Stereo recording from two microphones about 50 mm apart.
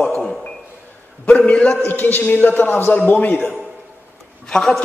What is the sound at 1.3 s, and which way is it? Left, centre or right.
Speech, left.